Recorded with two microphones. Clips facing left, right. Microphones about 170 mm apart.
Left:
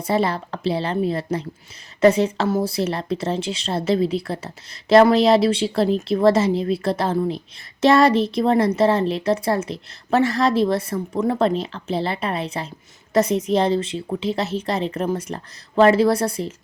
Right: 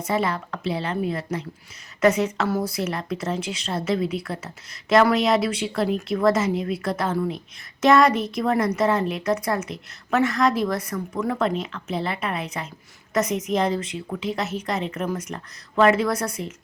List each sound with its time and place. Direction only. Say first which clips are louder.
0.0 s speech: left 3 dB; 35° left (ahead or behind)